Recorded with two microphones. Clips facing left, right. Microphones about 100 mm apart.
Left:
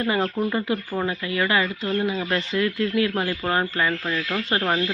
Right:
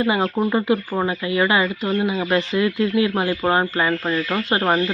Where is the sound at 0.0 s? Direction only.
20° right (ahead or behind).